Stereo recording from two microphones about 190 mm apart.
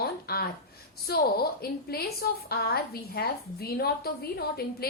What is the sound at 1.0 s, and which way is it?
A woman's voice, 55° left (ahead or behind).